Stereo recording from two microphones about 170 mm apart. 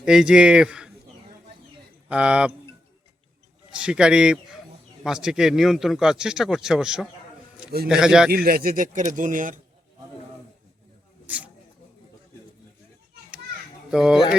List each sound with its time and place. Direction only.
0.0 s speech: 5° right (ahead or behind)
2.0 s speech: 5° right (ahead or behind)
3.7 s speech: 5° right (ahead or behind)
8.3 s a man's voice: 60° right (ahead or behind)
11.3 s speech: 10° right (ahead or behind)
13.9 s speech: 5° right (ahead or behind)